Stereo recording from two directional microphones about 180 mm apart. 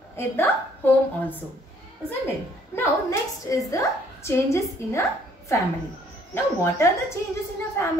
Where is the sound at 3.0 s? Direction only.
15° left (ahead or behind).